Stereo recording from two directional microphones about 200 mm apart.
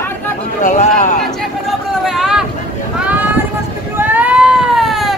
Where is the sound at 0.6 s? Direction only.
40° left (ahead or behind).